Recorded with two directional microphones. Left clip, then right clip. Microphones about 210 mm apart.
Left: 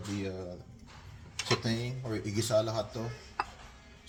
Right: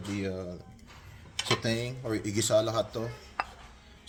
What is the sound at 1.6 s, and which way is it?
Speech, 50° right (ahead or behind).